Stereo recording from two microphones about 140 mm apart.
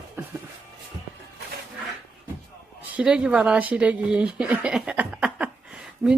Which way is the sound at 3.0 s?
5° right (ahead or behind).